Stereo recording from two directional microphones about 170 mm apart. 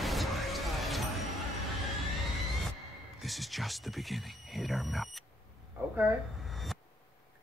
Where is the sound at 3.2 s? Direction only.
Centre (ahead or behind).